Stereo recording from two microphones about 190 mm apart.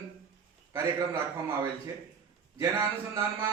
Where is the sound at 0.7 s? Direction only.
20° right (ahead or behind).